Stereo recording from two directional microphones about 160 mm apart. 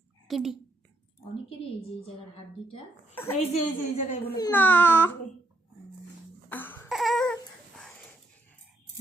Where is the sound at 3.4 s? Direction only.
40° left (ahead or behind).